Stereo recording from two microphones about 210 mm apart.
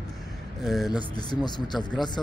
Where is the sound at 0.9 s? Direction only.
20° left (ahead or behind).